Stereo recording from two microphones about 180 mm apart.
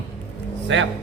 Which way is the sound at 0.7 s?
90° right.